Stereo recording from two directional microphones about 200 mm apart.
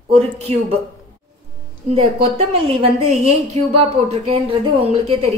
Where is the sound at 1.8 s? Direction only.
35° right (ahead or behind).